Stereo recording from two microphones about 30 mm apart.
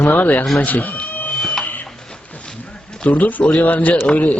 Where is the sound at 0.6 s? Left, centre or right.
Left.